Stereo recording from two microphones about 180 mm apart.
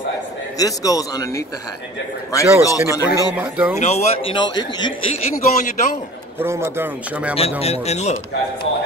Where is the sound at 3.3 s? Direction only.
10° right (ahead or behind).